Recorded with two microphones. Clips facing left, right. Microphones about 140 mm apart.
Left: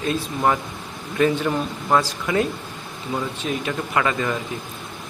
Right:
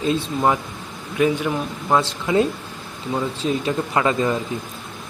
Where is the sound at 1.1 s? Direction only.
10° right (ahead or behind).